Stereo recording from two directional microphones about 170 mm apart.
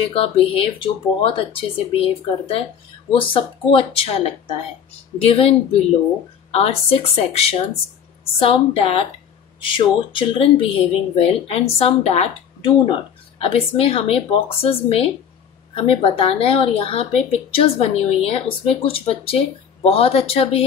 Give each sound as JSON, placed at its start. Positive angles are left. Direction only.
{"t": 0.1, "sound": "a woman's voice", "side_deg": 35}